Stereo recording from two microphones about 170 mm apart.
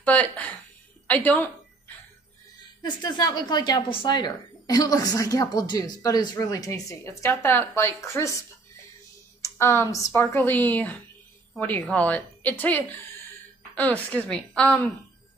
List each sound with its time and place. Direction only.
0.0 s a woman's voice: 10° left (ahead or behind)
2.8 s a woman's voice: 25° left (ahead or behind)
9.4 s a woman's voice: 15° left (ahead or behind)